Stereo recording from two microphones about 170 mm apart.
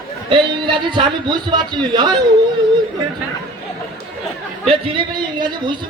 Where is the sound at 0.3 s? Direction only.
30° right (ahead or behind).